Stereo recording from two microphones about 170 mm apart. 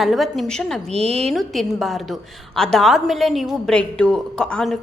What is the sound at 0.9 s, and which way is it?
Speech, 35° right (ahead or behind).